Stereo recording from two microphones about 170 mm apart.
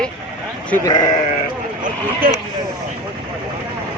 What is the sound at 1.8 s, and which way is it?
Speech, 55° right (ahead or behind).